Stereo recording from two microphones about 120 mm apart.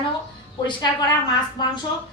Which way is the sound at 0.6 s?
35° left (ahead or behind).